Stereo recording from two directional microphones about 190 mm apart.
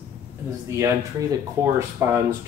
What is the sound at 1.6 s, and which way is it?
Speech, 15° right (ahead or behind).